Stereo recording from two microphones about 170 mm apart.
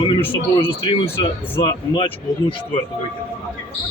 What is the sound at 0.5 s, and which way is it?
Speech, 30° left (ahead or behind).